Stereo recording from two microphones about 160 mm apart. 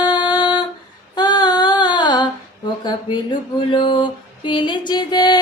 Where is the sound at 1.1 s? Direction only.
25° left (ahead or behind).